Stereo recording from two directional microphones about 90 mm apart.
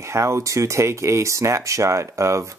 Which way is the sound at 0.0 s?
30° right (ahead or behind).